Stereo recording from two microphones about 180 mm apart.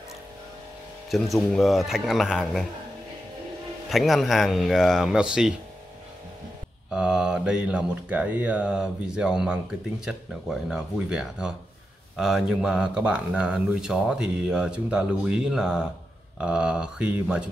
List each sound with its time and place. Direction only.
1.1 s speech: centre (ahead or behind)
3.9 s speech: centre (ahead or behind)
6.9 s speech: 5° right (ahead or behind)